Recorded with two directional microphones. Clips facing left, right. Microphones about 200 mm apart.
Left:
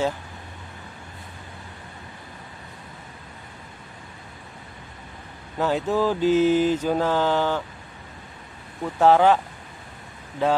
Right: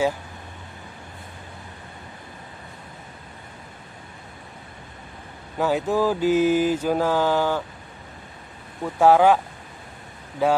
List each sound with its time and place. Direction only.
5.6 s mantra: 10° right (ahead or behind)
8.8 s mantra: 10° right (ahead or behind)
10.4 s mantra: 10° right (ahead or behind)